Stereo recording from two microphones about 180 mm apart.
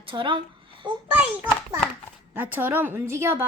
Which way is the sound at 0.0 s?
30° right (ahead or behind).